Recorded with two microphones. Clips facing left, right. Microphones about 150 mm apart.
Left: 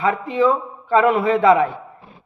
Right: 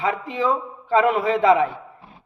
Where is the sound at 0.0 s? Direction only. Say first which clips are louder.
Left 5 dB; 45° left (ahead or behind).